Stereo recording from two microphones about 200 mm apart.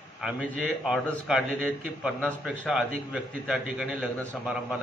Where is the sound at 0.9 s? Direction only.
Centre (ahead or behind).